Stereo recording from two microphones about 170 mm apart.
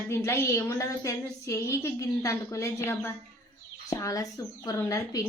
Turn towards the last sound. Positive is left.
turn(degrees=20)  # may be behind; listen again after turning